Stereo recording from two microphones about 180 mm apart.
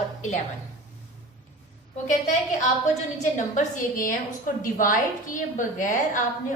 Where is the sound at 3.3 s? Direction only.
45° left (ahead or behind).